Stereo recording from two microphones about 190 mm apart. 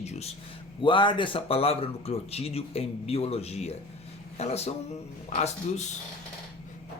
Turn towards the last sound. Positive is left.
turn(degrees=35)  # may be behind; listen again after turning